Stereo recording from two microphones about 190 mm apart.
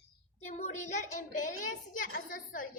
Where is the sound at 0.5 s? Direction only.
40° left (ahead or behind).